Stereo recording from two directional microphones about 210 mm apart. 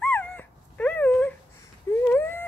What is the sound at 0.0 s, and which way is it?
Dog, 5° left (ahead or behind).